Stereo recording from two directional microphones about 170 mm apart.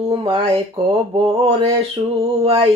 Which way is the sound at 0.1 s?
30° right (ahead or behind).